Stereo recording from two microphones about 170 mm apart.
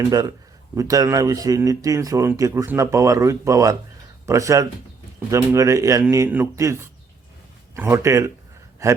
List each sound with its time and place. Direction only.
0.1 s a man's voice: 20° right (ahead or behind)